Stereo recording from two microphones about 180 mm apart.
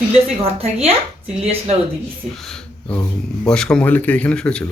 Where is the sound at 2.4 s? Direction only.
5° left (ahead or behind).